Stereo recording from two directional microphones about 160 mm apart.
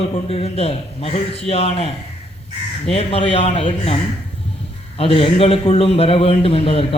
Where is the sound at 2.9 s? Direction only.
35° left (ahead or behind).